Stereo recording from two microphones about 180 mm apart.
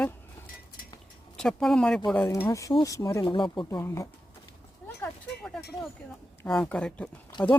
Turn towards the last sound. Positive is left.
turn(degrees=5)  # may be behind; listen again after turning